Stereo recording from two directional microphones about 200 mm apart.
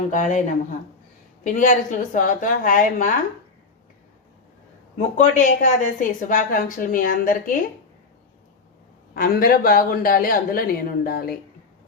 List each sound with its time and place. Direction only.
0.1 s a woman's voice: 35° left (ahead or behind)
1.5 s a woman's voice: 40° left (ahead or behind)
5.1 s a woman's voice: 40° left (ahead or behind)
9.1 s a woman's voice: 45° left (ahead or behind)